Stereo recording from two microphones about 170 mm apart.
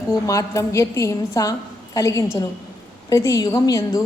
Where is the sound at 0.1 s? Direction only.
20° left (ahead or behind).